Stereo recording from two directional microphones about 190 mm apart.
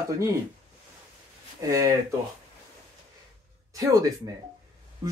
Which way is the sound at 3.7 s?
20° right (ahead or behind).